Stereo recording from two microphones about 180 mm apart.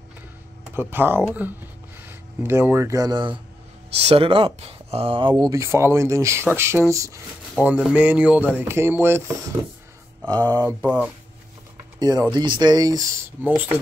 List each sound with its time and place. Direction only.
0.7 s speech: 10° right (ahead or behind)
3.9 s speech: 35° right (ahead or behind)
5.6 s speech: 15° right (ahead or behind)
7.5 s speech: 5° right (ahead or behind)
10.2 s speech: 25° right (ahead or behind)
10.8 s speech: 10° right (ahead or behind)
12.0 s speech: 25° right (ahead or behind)